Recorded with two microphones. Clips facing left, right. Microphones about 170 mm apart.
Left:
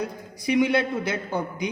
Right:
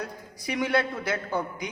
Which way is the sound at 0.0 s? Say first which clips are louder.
Left 6 dB; 20° left (ahead or behind).